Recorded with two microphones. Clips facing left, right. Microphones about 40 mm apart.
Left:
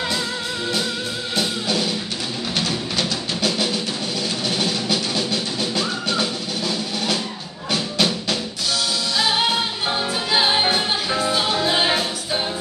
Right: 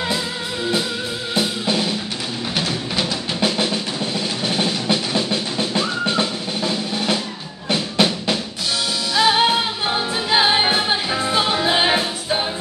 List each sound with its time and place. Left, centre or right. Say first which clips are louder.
1.3 s music: right 2 dB; centre
3.3 s music: right 2 dB; right